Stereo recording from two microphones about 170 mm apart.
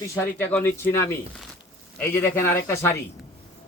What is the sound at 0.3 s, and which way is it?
Speech, 10° left (ahead or behind).